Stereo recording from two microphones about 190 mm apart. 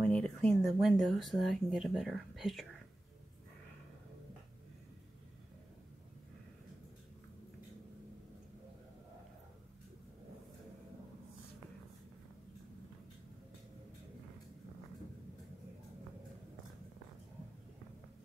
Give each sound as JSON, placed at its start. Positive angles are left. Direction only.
{"t": 0.0, "sound": "speech", "side_deg": 5}